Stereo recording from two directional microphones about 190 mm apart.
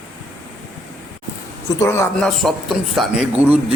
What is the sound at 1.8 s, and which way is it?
Speech, 15° left (ahead or behind).